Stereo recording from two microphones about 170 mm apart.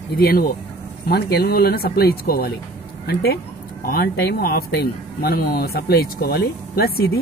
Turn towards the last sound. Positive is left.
turn(degrees=65)  # may be behind; listen again after turning